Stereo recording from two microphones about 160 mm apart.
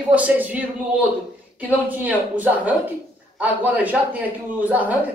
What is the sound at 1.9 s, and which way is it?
A man's voice, 10° right (ahead or behind).